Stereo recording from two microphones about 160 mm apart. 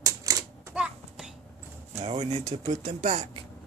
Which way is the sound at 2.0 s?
40° right (ahead or behind).